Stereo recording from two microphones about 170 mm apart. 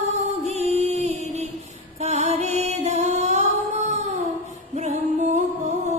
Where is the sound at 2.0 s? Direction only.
40° right (ahead or behind).